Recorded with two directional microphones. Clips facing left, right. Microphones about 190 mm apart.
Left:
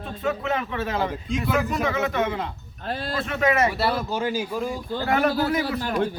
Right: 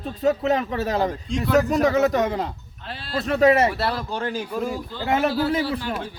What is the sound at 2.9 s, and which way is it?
Speech, 45° left (ahead or behind).